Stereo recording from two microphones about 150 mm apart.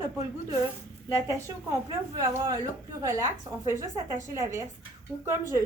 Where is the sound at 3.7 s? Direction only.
20° right (ahead or behind).